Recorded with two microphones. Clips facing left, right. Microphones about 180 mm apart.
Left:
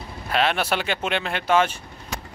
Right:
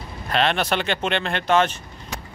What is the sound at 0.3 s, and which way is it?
Speech, 5° left (ahead or behind).